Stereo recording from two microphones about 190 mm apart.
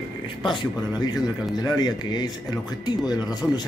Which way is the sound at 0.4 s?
25° left (ahead or behind).